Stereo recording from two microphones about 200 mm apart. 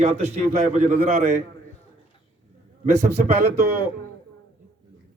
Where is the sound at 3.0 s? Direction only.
35° right (ahead or behind).